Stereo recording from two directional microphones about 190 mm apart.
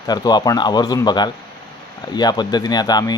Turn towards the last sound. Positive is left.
turn(degrees=20)  # may be behind; listen again after turning